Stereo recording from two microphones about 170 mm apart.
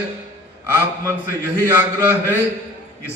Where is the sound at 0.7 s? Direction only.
15° right (ahead or behind).